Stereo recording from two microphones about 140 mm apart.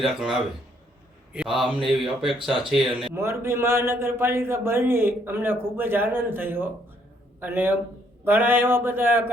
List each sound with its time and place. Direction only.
0.0 s speech: centre (ahead or behind)
3.2 s a man's voice: 20° right (ahead or behind)